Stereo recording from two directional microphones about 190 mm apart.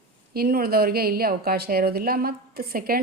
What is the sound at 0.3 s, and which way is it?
Speech, 55° right (ahead or behind).